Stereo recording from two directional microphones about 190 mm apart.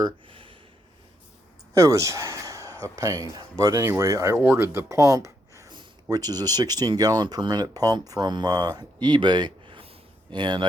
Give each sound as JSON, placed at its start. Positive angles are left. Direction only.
{"t": 0.0, "sound": "speech", "side_deg": -25}
{"t": 1.7, "sound": "a sound", "side_deg": -15}
{"t": 2.8, "sound": "speech", "side_deg": -15}